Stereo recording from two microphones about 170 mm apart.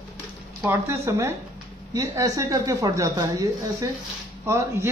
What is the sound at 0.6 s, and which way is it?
A man's voice, 15° right (ahead or behind).